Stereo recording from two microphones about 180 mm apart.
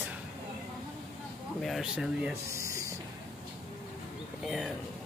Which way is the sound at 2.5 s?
15° right (ahead or behind).